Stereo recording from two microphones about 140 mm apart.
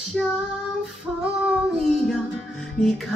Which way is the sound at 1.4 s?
Centre (ahead or behind).